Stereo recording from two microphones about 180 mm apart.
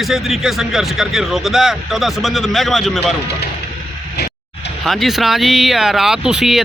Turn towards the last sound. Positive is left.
turn(degrees=-5)  # may be behind; listen again after turning